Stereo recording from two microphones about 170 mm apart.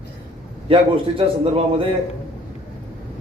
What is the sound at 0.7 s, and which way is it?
Speech, 35° right (ahead or behind).